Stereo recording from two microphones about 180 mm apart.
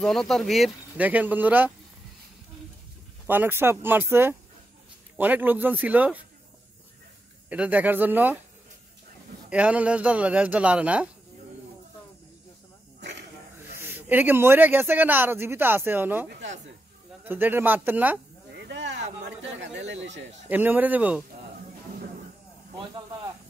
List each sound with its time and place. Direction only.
0.0 s speech: centre (ahead or behind)
3.3 s speech: 10° right (ahead or behind)
7.4 s speech: 5° right (ahead or behind)
9.5 s speech: 5° right (ahead or behind)
13.7 s speech: 10° right (ahead or behind)
16.3 s speech: 80° right
17.2 s speech: 10° right (ahead or behind)
18.6 s speech: 75° right (ahead or behind)
20.4 s speech: 10° right (ahead or behind)